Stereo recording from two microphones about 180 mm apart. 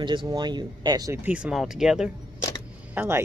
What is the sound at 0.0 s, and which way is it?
Speech, 25° right (ahead or behind).